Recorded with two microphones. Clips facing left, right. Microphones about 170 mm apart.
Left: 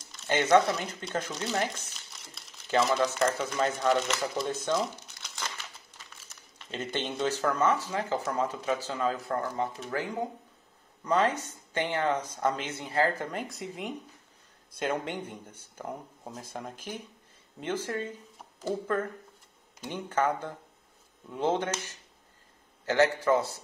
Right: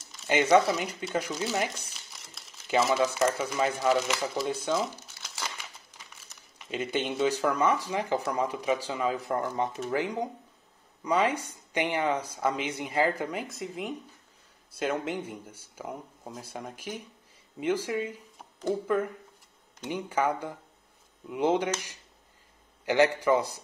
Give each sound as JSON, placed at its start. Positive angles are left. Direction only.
{"t": 0.0, "sound": "speech", "side_deg": -5}
{"t": 6.7, "sound": "speech", "side_deg": -10}